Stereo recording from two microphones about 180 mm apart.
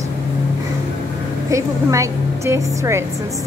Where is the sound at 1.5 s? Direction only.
15° right (ahead or behind).